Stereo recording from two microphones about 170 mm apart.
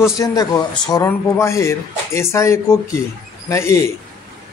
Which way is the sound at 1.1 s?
15° left (ahead or behind).